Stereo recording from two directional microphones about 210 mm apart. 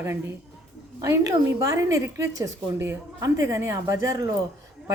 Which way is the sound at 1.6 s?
15° right (ahead or behind).